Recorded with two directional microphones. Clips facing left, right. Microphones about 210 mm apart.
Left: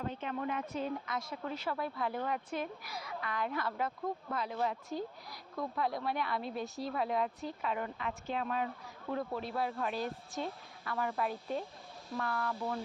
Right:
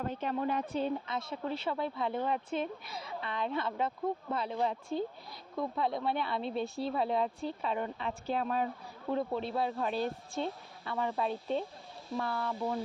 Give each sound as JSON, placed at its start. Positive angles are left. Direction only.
{"t": 0.0, "sound": "speech", "side_deg": -45}